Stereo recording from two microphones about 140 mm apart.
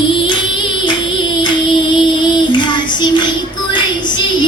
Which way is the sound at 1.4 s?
35° left (ahead or behind).